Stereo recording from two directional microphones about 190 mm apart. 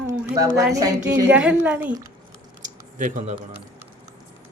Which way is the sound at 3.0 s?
40° right (ahead or behind).